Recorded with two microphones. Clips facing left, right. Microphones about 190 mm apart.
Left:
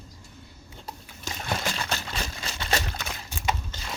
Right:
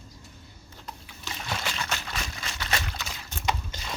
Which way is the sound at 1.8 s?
35° left (ahead or behind).